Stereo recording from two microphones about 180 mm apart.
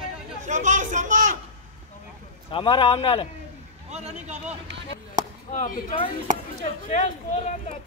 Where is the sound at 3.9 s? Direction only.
40° right (ahead or behind).